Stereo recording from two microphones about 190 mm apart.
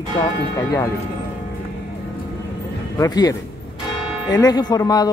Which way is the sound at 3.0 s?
20° left (ahead or behind).